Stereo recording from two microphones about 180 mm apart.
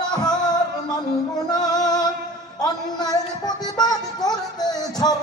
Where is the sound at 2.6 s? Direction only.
20° left (ahead or behind).